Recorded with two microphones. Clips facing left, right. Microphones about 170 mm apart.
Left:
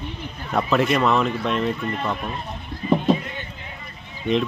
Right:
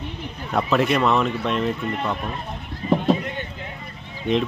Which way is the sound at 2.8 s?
40° right (ahead or behind).